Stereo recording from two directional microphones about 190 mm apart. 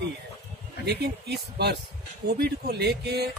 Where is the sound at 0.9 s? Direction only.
60° right (ahead or behind).